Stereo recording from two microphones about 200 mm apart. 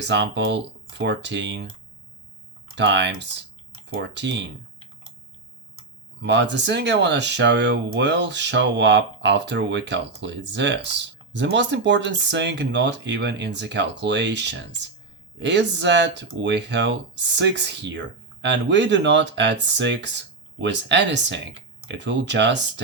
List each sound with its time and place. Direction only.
0.0 s speech: 60° right (ahead or behind)
2.7 s speech: 60° right (ahead or behind)
6.1 s speech: 60° right (ahead or behind)